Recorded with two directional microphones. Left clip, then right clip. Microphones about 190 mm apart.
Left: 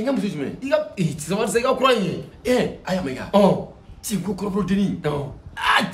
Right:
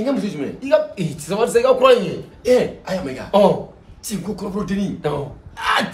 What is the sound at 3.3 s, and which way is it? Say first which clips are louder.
Speech: right 3 dB; centre (ahead or behind).